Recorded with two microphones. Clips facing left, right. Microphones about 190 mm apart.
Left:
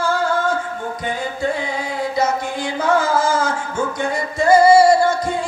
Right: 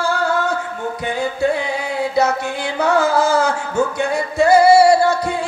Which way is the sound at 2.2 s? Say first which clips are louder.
Right 2 dB; 65° right (ahead or behind).